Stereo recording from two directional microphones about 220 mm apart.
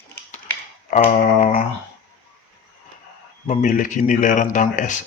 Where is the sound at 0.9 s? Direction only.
35° left (ahead or behind).